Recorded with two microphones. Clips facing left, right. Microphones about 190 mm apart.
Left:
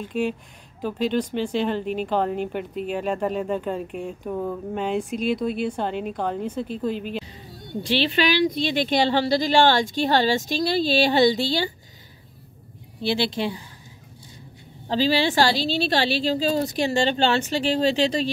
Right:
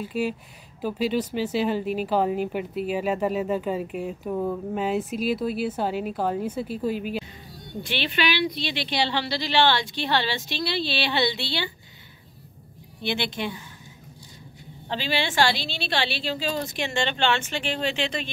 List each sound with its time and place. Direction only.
0.0 s speech: 5° right (ahead or behind)
7.8 s a woman's voice: 35° left (ahead or behind)
13.0 s a woman's voice: 30° left (ahead or behind)
14.9 s a woman's voice: 35° left (ahead or behind)